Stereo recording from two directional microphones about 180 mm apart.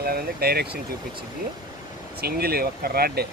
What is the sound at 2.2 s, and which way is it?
Speech, 60° right (ahead or behind).